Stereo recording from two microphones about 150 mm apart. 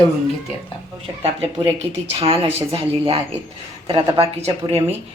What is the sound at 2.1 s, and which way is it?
Speech, 40° right (ahead or behind).